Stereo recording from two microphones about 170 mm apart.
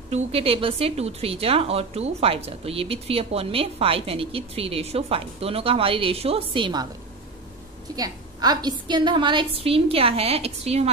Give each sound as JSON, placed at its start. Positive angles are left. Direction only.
{"t": 0.1, "sound": "speech", "side_deg": -35}
{"t": 7.9, "sound": "speech", "side_deg": -20}